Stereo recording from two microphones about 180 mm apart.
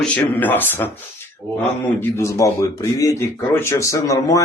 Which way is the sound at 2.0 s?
15° left (ahead or behind).